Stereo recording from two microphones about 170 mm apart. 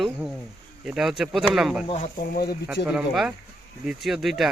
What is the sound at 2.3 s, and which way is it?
Speech, 60° left (ahead or behind).